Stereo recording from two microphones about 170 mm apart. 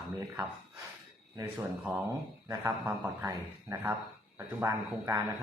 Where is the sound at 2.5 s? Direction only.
15° right (ahead or behind).